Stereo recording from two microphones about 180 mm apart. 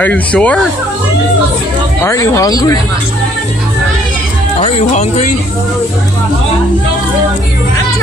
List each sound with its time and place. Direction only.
0.0 s speech: 10° left (ahead or behind)
2.0 s speech: 15° left (ahead or behind)
4.6 s speech: 40° left (ahead or behind)